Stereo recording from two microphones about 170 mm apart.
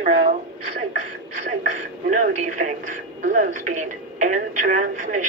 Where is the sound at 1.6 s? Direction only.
45° right (ahead or behind).